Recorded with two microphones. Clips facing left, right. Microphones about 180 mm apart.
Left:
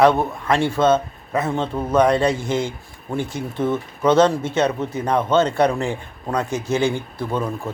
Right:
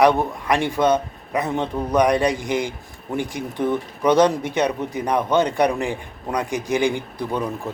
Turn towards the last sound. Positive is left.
turn(degrees=-15)  # may be behind; listen again after turning